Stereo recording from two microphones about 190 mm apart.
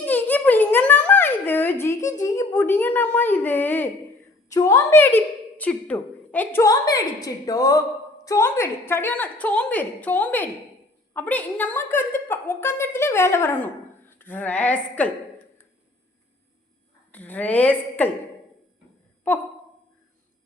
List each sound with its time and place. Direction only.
0.0 s a sound: 10° left (ahead or behind)
4.4 s a woman's voice: 15° left (ahead or behind)
17.1 s a woman's voice: 10° left (ahead or behind)